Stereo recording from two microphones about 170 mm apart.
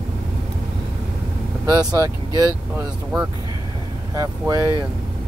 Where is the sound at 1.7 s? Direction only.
20° right (ahead or behind).